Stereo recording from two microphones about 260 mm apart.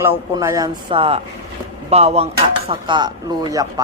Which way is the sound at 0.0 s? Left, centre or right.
Centre.